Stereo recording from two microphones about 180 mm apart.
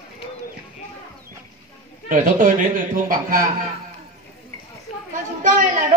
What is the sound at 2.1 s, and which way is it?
A man's voice, 50° right (ahead or behind).